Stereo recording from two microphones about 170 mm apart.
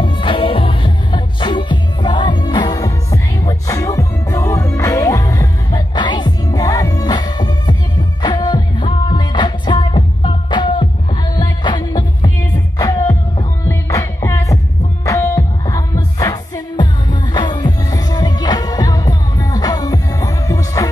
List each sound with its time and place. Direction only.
0.0 s music: 30° left (ahead or behind)